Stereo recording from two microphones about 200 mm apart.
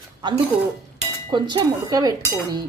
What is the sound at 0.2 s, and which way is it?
Speech, 25° right (ahead or behind).